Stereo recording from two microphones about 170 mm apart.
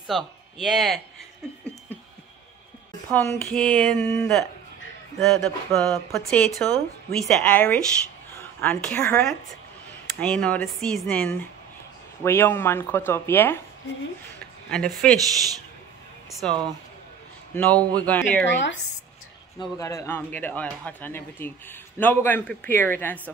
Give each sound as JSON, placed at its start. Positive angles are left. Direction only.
{"t": 0.0, "sound": "speech", "side_deg": 0}
{"t": 3.1, "sound": "speech", "side_deg": 15}
{"t": 5.2, "sound": "speech", "side_deg": 0}
{"t": 14.7, "sound": "speech", "side_deg": 5}
{"t": 16.3, "sound": "speech", "side_deg": 0}
{"t": 17.6, "sound": "speech", "side_deg": 10}
{"t": 18.5, "sound": "speech", "side_deg": 90}
{"t": 19.6, "sound": "speech", "side_deg": 20}